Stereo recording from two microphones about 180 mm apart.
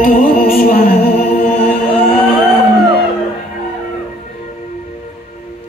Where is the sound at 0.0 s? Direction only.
50° left (ahead or behind).